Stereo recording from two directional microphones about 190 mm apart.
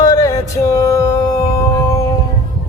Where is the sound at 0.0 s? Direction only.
20° left (ahead or behind).